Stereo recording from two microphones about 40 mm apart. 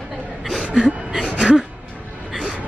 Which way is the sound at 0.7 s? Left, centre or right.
Centre.